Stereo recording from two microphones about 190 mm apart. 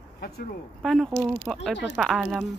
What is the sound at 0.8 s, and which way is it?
Speech, centre (ahead or behind).